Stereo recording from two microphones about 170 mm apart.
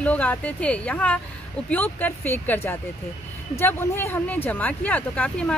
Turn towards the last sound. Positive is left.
turn(degrees=5)  # may be behind; listen again after turning